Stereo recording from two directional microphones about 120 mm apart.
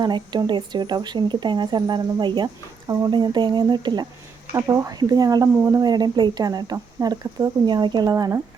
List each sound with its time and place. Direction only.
0.0 s speech: 40° right (ahead or behind)